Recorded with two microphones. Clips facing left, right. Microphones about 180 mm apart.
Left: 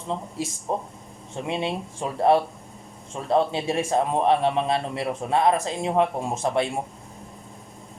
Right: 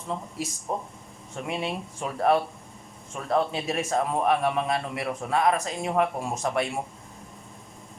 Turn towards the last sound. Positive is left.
turn(degrees=25)  # may be behind; listen again after turning